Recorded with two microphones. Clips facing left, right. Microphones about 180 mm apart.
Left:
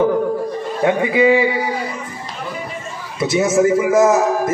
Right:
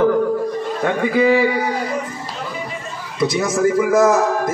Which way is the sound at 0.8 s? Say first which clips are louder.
Left 2 dB; 10° left (ahead or behind).